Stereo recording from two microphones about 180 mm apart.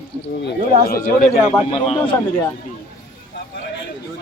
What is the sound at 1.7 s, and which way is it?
Speech, 30° left (ahead or behind).